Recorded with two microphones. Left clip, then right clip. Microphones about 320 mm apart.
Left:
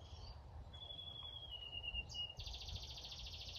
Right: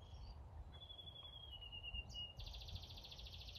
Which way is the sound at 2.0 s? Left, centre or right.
Left.